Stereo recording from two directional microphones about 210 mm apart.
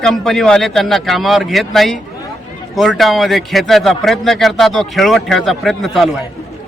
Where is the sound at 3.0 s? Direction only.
Centre (ahead or behind).